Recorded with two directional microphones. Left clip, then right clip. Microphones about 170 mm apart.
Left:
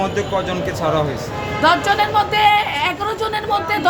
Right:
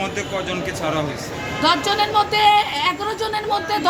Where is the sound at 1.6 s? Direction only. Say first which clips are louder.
Left 3 dB; centre (ahead or behind).